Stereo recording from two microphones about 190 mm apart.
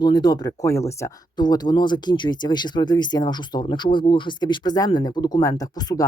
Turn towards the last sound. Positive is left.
turn(degrees=20)  # may be behind; listen again after turning